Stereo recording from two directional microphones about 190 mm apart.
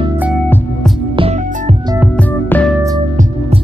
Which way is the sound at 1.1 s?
30° right (ahead or behind).